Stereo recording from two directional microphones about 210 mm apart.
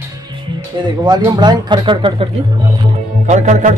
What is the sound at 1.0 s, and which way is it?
Speech, 20° right (ahead or behind).